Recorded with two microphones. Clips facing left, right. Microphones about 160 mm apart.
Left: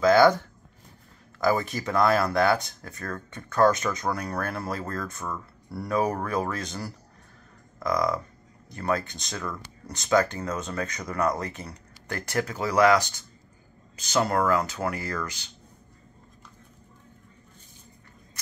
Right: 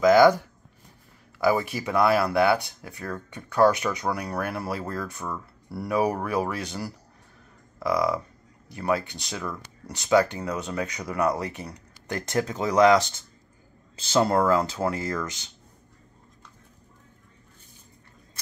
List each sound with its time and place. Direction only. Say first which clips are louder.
0.0 s speech: right 2 dB; 15° right (ahead or behind)